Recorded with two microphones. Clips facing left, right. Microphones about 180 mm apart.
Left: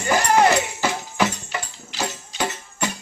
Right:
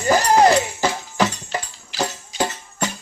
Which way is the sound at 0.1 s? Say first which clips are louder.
Right 3 dB; 35° right (ahead or behind).